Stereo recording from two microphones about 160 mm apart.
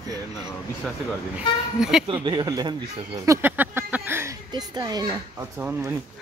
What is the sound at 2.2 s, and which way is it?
Speech, 25° right (ahead or behind).